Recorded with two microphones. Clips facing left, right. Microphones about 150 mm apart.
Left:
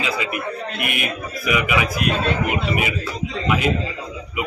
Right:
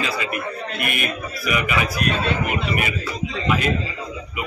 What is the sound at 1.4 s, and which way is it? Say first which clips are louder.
A man's voice: left 2 dB; 15° left (ahead or behind).